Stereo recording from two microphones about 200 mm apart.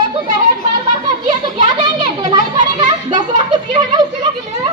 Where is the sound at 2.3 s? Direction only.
20° right (ahead or behind).